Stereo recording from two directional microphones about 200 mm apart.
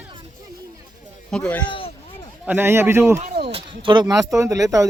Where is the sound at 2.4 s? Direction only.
10° right (ahead or behind).